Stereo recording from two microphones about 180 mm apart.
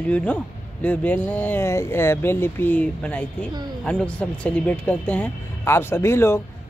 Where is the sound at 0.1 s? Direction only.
5° left (ahead or behind).